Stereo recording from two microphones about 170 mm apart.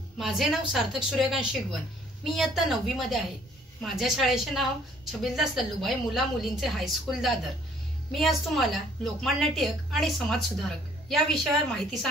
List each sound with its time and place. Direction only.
0.2 s a woman's voice: centre (ahead or behind)